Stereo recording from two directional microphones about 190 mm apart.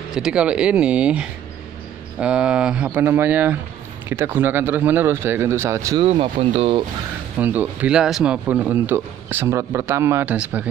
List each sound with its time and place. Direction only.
0.1 s speech: 5° right (ahead or behind)
6.0 s speech: 30° right (ahead or behind)
7.3 s speech: 10° right (ahead or behind)